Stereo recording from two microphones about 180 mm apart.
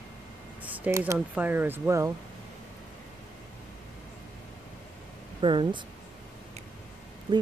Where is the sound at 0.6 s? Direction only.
10° right (ahead or behind).